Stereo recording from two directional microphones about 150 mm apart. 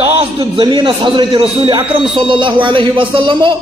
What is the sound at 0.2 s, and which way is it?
A man's voice, 35° right (ahead or behind).